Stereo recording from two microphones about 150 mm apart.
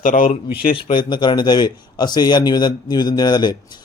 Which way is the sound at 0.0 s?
60° left (ahead or behind).